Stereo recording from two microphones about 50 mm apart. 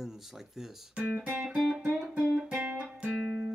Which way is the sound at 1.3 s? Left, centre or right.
Centre.